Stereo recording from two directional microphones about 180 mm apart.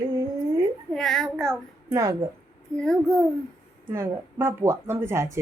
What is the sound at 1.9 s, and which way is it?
Speech, 15° right (ahead or behind).